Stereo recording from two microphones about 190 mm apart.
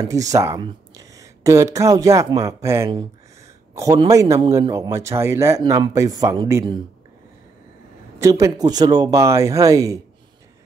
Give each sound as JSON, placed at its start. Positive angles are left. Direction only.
{"t": 0.0, "sound": "a man's voice", "side_deg": -20}
{"t": 8.2, "sound": "a man's voice", "side_deg": -15}